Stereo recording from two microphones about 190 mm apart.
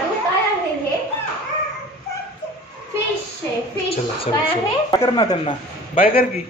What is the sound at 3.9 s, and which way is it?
Speech, 30° left (ahead or behind).